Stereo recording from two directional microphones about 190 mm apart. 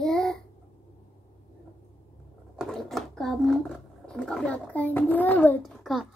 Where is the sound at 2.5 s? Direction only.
Centre (ahead or behind).